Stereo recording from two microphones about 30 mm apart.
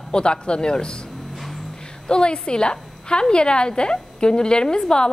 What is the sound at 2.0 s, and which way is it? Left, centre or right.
Speech, left.